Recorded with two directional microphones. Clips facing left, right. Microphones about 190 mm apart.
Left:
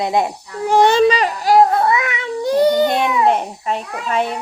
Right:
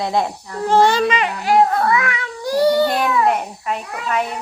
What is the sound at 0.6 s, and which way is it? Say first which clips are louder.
Child singing: left 3 dB; 15° left (ahead or behind).